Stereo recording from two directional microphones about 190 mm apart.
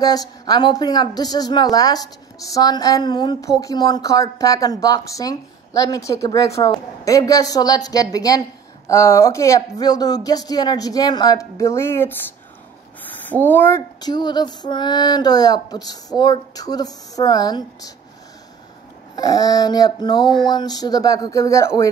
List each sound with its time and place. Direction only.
0.0 s speech: 20° left (ahead or behind)
13.5 s speech: 10° left (ahead or behind)
19.1 s speech: 20° left (ahead or behind)